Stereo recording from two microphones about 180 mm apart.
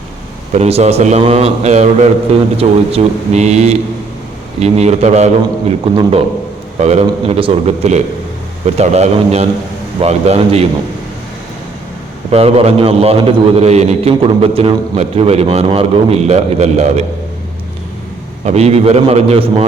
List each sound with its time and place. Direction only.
0.5 s a man's voice: 35° right (ahead or behind)
12.3 s a man's voice: 35° right (ahead or behind)
18.4 s a man's voice: 35° right (ahead or behind)